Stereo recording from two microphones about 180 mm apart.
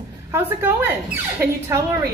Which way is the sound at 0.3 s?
10° right (ahead or behind).